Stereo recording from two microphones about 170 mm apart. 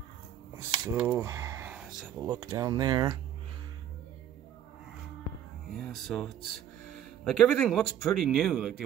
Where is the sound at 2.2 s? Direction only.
25° right (ahead or behind).